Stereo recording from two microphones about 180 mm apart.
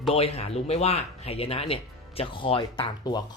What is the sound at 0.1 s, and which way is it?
Speech, 35° left (ahead or behind).